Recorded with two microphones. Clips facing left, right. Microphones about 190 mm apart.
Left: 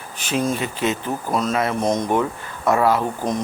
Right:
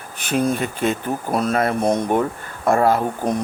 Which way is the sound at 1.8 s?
10° right (ahead or behind).